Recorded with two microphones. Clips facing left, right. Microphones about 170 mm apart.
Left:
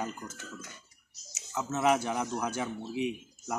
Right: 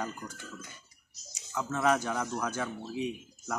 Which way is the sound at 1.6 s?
20° left (ahead or behind).